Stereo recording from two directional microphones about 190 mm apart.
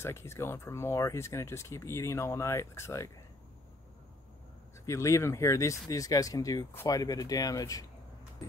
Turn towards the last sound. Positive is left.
turn(degrees=20)  # may be behind; listen again after turning